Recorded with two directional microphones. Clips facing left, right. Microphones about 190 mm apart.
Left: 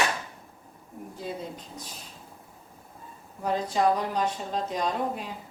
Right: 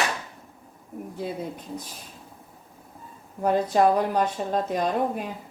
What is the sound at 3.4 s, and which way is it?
Speech, 55° right (ahead or behind).